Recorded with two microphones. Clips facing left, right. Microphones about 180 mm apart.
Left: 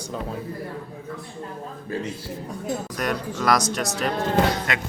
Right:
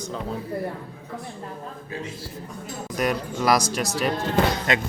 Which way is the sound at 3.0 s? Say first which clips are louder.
Right 7 dB; 5° right (ahead or behind).